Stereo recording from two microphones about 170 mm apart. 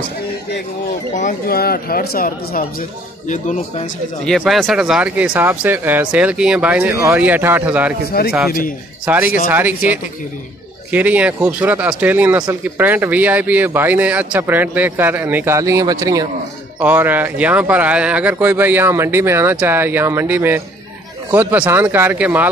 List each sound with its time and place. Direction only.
1.1 s speech: 55° left (ahead or behind)
3.3 s speech: 45° left (ahead or behind)
4.3 s speech: centre (ahead or behind)
8.2 s speech: 60° left (ahead or behind)
9.0 s speech: 10° right (ahead or behind)
10.9 s speech: 10° right (ahead or behind)